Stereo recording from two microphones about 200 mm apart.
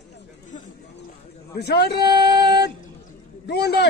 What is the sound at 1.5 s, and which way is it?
Speech, 55° left (ahead or behind).